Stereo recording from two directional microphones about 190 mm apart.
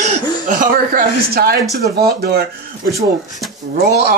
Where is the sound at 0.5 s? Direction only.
45° right (ahead or behind).